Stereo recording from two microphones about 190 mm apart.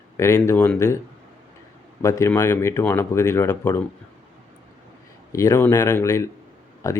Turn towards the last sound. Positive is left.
turn(degrees=20)  # may be behind; listen again after turning